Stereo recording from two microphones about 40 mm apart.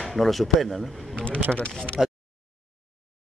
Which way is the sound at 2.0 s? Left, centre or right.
Centre.